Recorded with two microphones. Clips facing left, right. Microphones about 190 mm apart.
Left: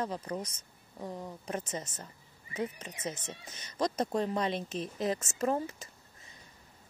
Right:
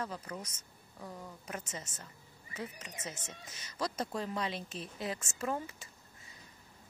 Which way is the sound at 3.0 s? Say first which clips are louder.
Left 8 dB; 35° left (ahead or behind).